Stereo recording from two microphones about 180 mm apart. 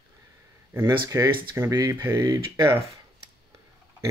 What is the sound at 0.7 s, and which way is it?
Speech, 15° right (ahead or behind).